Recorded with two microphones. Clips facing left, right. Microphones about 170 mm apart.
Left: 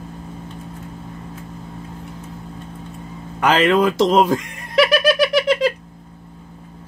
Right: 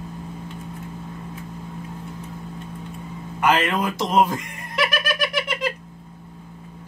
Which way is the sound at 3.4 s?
90° left.